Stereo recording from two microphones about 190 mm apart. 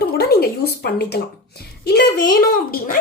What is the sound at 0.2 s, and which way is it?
Speech, 55° left (ahead or behind).